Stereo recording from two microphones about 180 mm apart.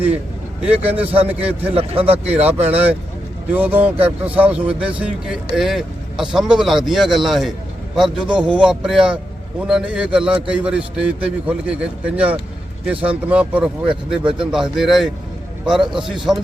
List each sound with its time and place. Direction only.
0.8 s a man's voice: 10° right (ahead or behind)
2.1 s speech: 35° right (ahead or behind)
2.6 s a man's voice: 10° right (ahead or behind)